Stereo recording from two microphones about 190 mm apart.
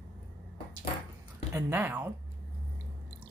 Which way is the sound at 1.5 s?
10° right (ahead or behind).